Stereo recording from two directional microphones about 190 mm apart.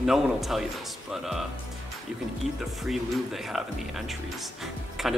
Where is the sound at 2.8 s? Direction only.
Centre (ahead or behind).